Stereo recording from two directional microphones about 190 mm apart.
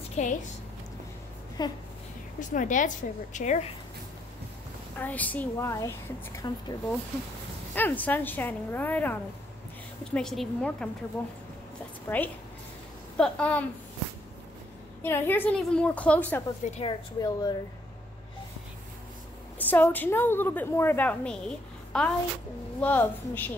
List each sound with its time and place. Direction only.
0.2 s a woman's voice: 35° left (ahead or behind)
1.6 s speech: 20° left (ahead or behind)
2.5 s a woman's voice: 45° left (ahead or behind)
4.9 s a woman's voice: 10° left (ahead or behind)
12.1 s a woman's voice: 10° left (ahead or behind)
15.0 s a woman's voice: 10° left (ahead or behind)
16.6 s a woman's voice: 35° left (ahead or behind)
17.2 s speech: 20° left (ahead or behind)
19.6 s a woman's voice: 10° left (ahead or behind)